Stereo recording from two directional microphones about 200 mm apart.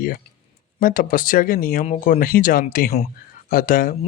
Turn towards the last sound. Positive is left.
turn(degrees=45)  # may be behind; listen again after turning